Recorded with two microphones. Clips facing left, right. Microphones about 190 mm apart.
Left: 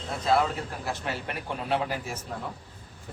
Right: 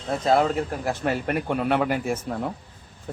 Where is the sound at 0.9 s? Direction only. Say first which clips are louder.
Right 7 dB; 50° right (ahead or behind).